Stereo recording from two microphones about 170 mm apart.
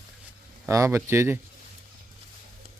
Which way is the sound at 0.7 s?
15° right (ahead or behind).